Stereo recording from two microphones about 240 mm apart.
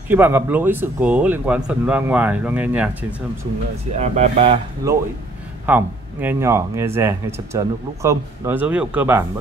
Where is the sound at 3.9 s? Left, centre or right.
Right.